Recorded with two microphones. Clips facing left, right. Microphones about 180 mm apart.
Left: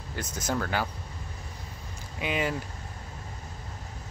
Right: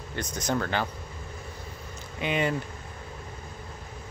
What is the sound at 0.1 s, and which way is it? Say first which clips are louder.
Speech: right 2 dB; 5° left (ahead or behind).